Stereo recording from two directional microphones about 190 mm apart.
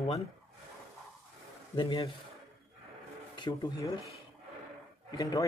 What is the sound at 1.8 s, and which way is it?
Speech, 25° left (ahead or behind).